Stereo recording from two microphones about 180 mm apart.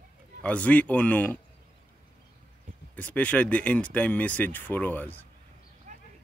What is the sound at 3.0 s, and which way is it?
Speech, 5° left (ahead or behind).